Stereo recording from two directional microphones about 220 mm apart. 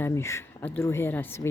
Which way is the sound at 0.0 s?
10° left (ahead or behind).